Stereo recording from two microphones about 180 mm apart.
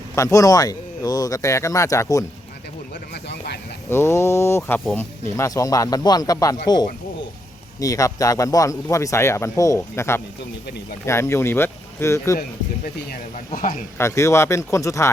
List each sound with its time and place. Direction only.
0.2 s speech: 20° left (ahead or behind)
3.2 s a sound: 65° left (ahead or behind)
3.8 s speech: 15° left (ahead or behind)
7.8 s speech: 20° left (ahead or behind)
12.8 s speech: 50° left (ahead or behind)
14.0 s speech: 15° left (ahead or behind)